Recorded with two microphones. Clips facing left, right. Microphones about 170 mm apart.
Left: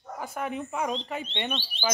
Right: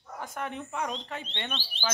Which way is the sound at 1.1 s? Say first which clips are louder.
Left 5 dB; 15° left (ahead or behind).